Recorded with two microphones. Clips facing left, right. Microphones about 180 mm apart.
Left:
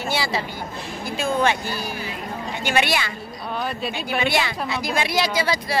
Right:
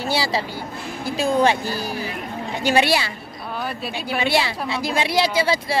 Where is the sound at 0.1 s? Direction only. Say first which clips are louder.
Right 2 dB; 35° right (ahead or behind).